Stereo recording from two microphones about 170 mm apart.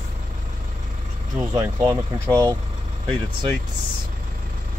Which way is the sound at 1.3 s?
15° right (ahead or behind).